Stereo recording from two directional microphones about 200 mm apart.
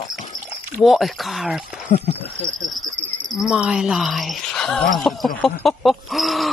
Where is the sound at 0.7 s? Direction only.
Centre (ahead or behind).